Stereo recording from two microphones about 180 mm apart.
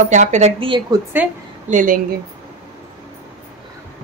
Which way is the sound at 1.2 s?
10° right (ahead or behind).